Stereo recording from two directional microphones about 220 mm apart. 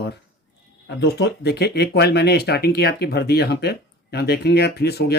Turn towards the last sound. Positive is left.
turn(degrees=45)  # may be behind; listen again after turning